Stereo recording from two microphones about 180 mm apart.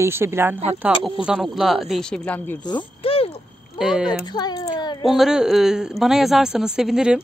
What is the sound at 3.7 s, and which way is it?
Speech, centre (ahead or behind).